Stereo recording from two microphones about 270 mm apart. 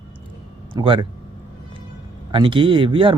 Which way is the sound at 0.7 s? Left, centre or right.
Centre.